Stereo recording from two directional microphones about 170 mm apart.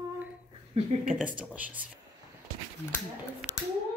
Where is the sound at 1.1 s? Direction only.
10° right (ahead or behind).